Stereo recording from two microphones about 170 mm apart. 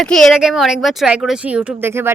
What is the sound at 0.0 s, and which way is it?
Speech, 5° left (ahead or behind).